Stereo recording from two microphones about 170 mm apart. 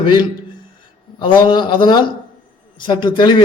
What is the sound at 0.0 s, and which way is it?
A man's voice, 30° left (ahead or behind).